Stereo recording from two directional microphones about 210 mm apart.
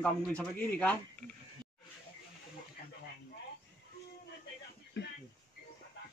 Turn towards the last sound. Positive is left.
turn(degrees=55)  # may be behind; listen again after turning